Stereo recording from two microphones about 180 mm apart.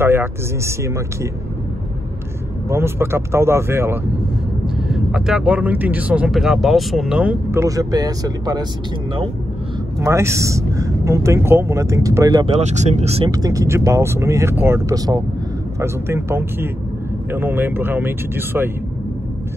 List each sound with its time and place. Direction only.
0.0 s speech: 15° right (ahead or behind)
2.7 s speech: 15° right (ahead or behind)
4.6 s speech: 5° right (ahead or behind)
7.6 s speech: 20° right (ahead or behind)
9.9 s speech: 15° right (ahead or behind)
12.4 s speech: 35° right (ahead or behind)
13.3 s speech: 20° right (ahead or behind)